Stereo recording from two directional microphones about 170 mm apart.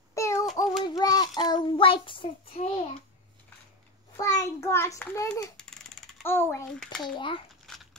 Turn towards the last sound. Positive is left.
turn(degrees=0)  # may be behind; listen again after turning